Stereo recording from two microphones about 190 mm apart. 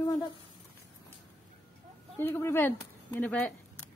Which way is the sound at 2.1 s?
10° left (ahead or behind).